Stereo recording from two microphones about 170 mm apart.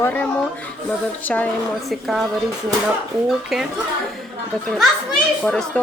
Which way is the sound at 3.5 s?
Centre (ahead or behind).